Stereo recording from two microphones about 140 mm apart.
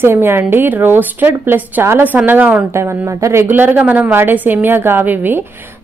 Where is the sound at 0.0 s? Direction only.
15° right (ahead or behind).